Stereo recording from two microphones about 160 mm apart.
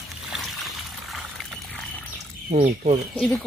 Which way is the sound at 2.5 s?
50° right (ahead or behind).